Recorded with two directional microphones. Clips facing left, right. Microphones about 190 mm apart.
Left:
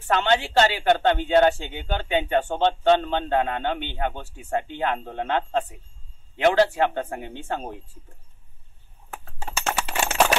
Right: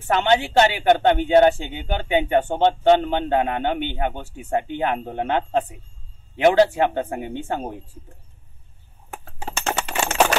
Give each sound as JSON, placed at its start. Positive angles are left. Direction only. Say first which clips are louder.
{"t": 0.0, "sound": "speech", "louder": "right 3 dB", "side_deg": -20}
{"t": 9.5, "sound": "crushing", "louder": "right 2 dB", "side_deg": 5}